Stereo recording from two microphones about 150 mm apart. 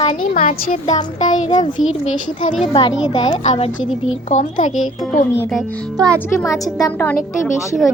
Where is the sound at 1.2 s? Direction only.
55° left (ahead or behind).